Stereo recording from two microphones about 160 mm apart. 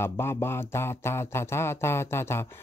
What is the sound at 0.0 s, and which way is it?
Speech, 15° left (ahead or behind).